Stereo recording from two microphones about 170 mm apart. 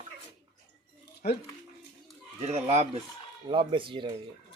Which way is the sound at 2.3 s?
40° right (ahead or behind).